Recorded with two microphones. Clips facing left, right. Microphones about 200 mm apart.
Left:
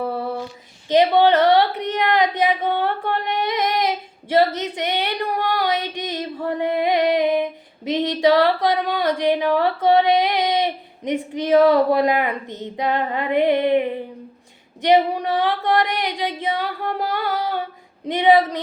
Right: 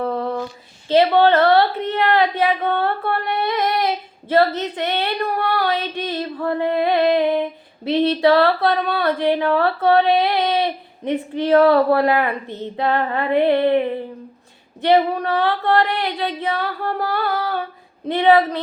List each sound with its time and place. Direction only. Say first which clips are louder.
0.0 s female singing: right 2 dB; 5° left (ahead or behind)
0.9 s a sound: right 1 dB; 15° left (ahead or behind)
7.9 s speech: right 2 dB; 15° left (ahead or behind)